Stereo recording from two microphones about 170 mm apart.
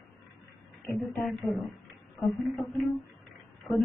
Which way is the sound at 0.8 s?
Centre (ahead or behind).